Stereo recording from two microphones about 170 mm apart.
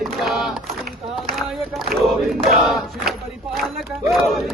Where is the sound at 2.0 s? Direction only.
Centre (ahead or behind).